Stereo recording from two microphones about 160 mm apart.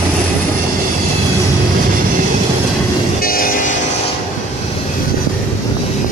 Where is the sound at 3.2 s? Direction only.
65° left (ahead or behind).